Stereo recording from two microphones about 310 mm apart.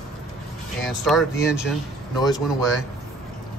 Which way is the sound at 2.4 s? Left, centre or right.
Centre.